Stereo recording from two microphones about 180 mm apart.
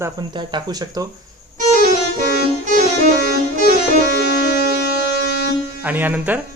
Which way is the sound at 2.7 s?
45° right (ahead or behind).